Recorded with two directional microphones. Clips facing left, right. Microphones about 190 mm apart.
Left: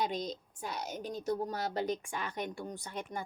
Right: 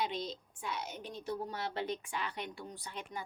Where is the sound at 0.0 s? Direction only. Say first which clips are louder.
Left 3 dB; 45° left (ahead or behind).